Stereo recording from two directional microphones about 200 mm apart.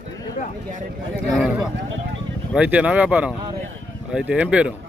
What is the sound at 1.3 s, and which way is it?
Speech, 5° right (ahead or behind).